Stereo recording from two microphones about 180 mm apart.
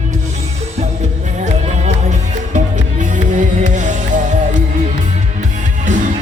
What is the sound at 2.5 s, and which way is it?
Music, 40° right (ahead or behind).